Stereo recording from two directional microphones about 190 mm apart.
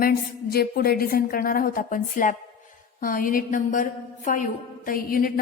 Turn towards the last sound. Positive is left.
turn(degrees=50)  # may be behind; listen again after turning